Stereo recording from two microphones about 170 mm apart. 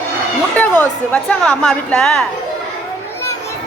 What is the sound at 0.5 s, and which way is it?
A woman's voice, 10° left (ahead or behind).